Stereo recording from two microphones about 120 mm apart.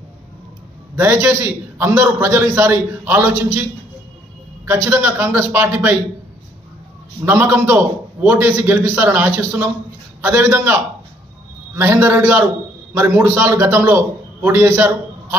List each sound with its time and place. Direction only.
0.9 s a man's voice: 20° right (ahead or behind)
4.6 s a man's voice: 20° right (ahead or behind)
7.2 s a man's voice: 15° right (ahead or behind)